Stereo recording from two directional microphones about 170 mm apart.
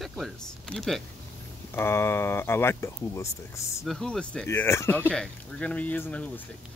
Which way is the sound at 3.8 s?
Centre (ahead or behind).